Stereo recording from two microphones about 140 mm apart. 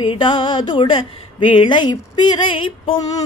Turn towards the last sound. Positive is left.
turn(degrees=35)  # may be behind; listen again after turning